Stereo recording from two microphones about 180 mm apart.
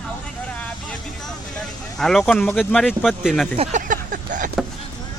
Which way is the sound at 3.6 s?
45° right (ahead or behind).